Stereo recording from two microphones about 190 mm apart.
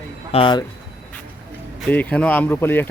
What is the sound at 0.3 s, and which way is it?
Speech, 25° left (ahead or behind).